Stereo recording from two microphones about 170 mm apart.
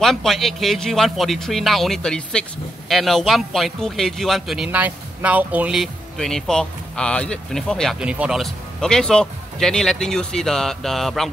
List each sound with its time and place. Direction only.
0.0 s speech: centre (ahead or behind)